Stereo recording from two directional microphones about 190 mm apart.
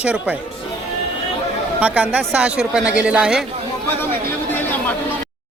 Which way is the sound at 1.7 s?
5° right (ahead or behind).